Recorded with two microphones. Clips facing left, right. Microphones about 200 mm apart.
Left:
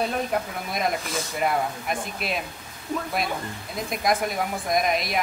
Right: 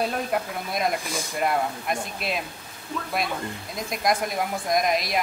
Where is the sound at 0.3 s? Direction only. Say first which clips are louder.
Even; centre (ahead or behind).